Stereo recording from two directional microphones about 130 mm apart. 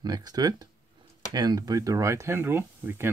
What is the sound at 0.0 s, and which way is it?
Speech, 30° right (ahead or behind).